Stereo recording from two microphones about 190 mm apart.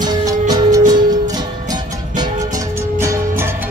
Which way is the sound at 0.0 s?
20° right (ahead or behind).